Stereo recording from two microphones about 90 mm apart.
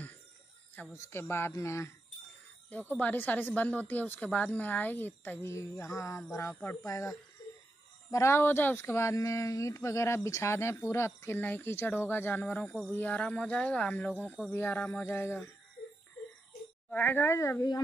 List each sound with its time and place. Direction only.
0.9 s speech: 30° left (ahead or behind)
3.0 s speech: 20° left (ahead or behind)
5.5 s speech: 35° left (ahead or behind)
16.9 s speech: 20° left (ahead or behind)